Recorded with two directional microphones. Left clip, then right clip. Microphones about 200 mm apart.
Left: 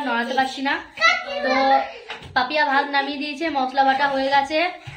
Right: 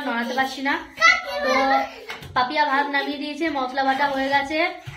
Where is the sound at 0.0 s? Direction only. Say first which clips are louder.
Left 2 dB; centre (ahead or behind).